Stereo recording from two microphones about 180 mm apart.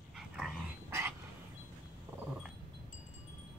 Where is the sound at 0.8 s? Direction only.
15° right (ahead or behind).